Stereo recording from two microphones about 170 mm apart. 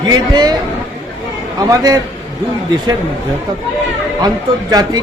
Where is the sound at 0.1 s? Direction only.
25° right (ahead or behind).